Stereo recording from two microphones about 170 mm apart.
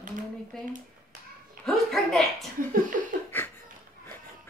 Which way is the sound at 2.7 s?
50° right (ahead or behind).